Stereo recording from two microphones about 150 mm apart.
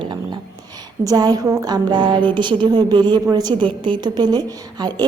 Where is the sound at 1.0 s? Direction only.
25° right (ahead or behind).